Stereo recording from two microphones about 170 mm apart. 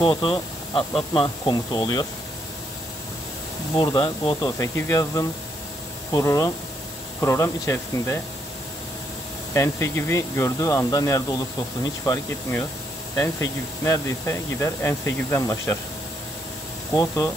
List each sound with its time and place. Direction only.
0.0 s speech: 30° left (ahead or behind)
3.7 s speech: 25° left (ahead or behind)
9.5 s speech: 15° left (ahead or behind)
16.9 s speech: 20° left (ahead or behind)